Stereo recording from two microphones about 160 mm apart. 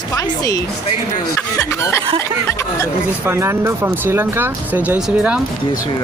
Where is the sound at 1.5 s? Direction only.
15° left (ahead or behind).